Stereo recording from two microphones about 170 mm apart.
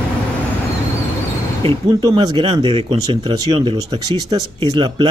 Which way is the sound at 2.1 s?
30° right (ahead or behind).